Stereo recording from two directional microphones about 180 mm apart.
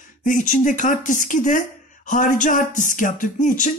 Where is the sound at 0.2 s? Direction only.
45° left (ahead or behind).